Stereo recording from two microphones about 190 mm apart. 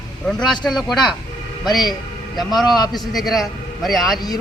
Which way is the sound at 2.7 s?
20° left (ahead or behind).